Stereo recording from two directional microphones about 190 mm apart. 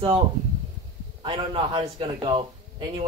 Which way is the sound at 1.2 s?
25° right (ahead or behind).